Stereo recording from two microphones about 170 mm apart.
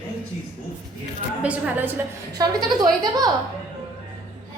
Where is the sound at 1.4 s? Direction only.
10° right (ahead or behind).